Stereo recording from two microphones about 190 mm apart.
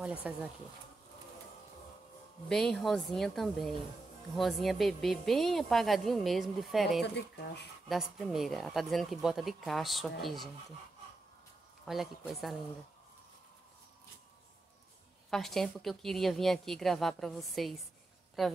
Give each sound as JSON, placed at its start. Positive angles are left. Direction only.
{"t": 0.0, "sound": "speech", "side_deg": -5}
{"t": 2.5, "sound": "speech", "side_deg": 0}
{"t": 7.0, "sound": "speech", "side_deg": 60}
{"t": 7.9, "sound": "speech", "side_deg": 0}
{"t": 11.8, "sound": "speech", "side_deg": 0}
{"t": 15.2, "sound": "speech", "side_deg": 0}